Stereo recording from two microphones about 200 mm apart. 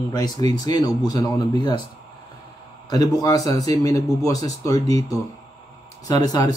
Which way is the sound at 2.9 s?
20° left (ahead or behind).